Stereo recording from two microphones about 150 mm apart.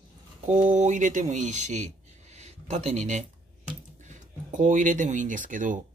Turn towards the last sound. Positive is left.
turn(degrees=-60)  # may be behind; listen again after turning